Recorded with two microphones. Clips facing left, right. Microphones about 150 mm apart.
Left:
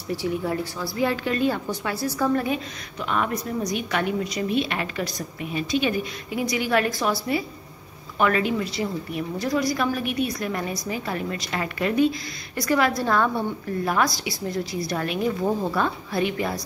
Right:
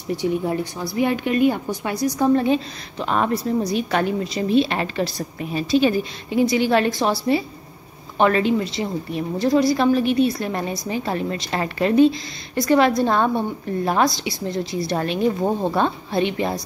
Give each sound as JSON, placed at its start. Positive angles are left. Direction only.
{"t": 0.1, "sound": "a woman's voice", "side_deg": -20}